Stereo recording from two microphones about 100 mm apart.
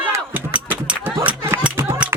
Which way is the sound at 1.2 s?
25° right (ahead or behind).